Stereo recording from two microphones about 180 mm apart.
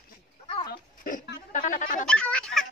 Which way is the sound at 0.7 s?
50° left (ahead or behind).